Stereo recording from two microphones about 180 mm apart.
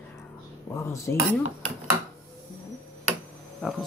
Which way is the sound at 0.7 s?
15° left (ahead or behind).